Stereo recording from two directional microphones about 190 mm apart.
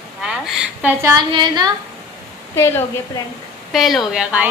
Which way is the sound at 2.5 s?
15° left (ahead or behind).